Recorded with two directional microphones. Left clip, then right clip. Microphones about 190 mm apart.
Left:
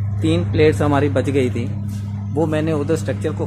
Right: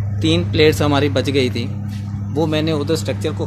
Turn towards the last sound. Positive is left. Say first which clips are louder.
# right 1 dB
turn(degrees=-5)  # may be behind; listen again after turning